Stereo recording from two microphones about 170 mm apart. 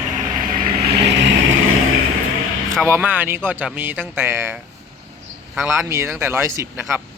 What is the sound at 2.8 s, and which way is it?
Speech, 10° right (ahead or behind).